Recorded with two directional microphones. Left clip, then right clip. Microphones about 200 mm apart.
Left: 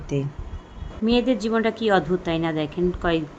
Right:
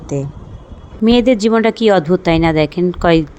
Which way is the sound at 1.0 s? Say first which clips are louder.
Right 10 dB; 35° right (ahead or behind).